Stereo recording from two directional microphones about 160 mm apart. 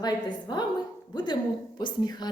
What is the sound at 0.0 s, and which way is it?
A woman's voice, 25° left (ahead or behind).